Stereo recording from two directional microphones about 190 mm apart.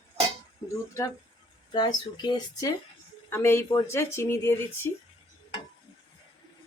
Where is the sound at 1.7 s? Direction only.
20° left (ahead or behind).